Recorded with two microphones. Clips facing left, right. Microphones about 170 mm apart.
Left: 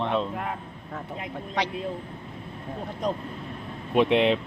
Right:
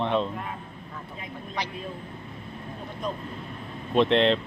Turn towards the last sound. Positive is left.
turn(degrees=10)  # may be behind; listen again after turning